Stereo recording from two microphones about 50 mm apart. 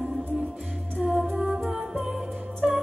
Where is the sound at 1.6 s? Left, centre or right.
Centre.